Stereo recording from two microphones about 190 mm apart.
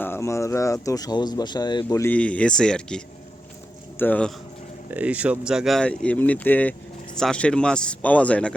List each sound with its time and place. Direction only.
0.0 s speech: 15° left (ahead or behind)
4.9 s speech: 10° right (ahead or behind)